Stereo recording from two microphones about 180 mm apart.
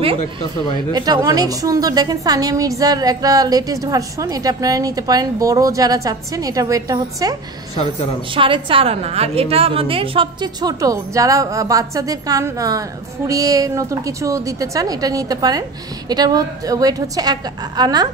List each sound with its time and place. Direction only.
0.9 s a woman's voice: 20° right (ahead or behind)
8.4 s a woman's voice: 30° right (ahead or behind)